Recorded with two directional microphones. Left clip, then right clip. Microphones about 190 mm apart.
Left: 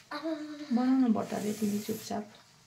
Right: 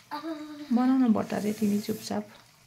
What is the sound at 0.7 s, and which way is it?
Speech, 30° right (ahead or behind).